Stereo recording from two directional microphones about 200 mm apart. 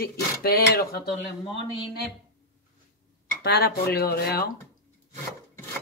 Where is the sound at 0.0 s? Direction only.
50° left (ahead or behind).